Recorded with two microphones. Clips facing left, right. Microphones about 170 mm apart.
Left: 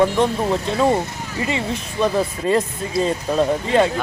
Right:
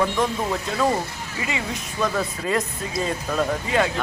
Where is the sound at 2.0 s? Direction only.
30° left (ahead or behind).